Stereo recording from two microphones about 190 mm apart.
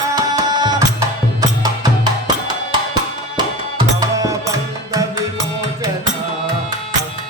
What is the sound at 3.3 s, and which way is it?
Music, 20° right (ahead or behind).